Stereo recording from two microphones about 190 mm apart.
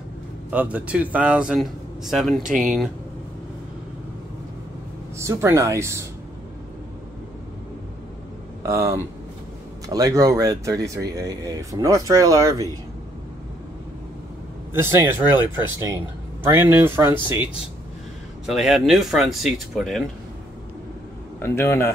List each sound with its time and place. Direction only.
0.5 s speech: 5° right (ahead or behind)
5.2 s speech: 15° right (ahead or behind)
8.6 s speech: 15° right (ahead or behind)
14.7 s speech: 10° right (ahead or behind)
18.5 s speech: centre (ahead or behind)
21.4 s a man's voice: 15° left (ahead or behind)